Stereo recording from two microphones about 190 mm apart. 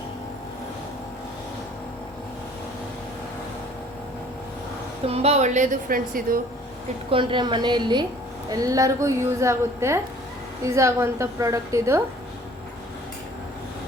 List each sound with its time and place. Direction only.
5.0 s a woman's voice: 35° right (ahead or behind)
7.1 s a woman's voice: 25° right (ahead or behind)